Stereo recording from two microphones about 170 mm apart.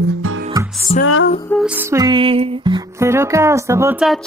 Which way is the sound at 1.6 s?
10° right (ahead or behind).